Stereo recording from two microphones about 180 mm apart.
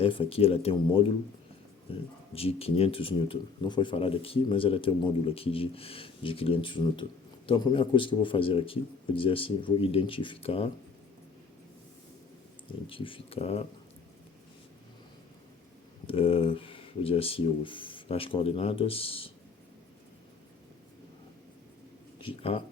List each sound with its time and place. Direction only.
0.0 s speech: 30° left (ahead or behind)
2.3 s speech: 35° left (ahead or behind)
12.9 s speech: 30° left (ahead or behind)
16.0 s speech: 30° left (ahead or behind)
22.2 s speech: 30° left (ahead or behind)